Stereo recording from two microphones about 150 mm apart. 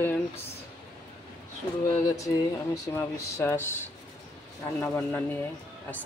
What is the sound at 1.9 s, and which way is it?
Speech, 20° left (ahead or behind).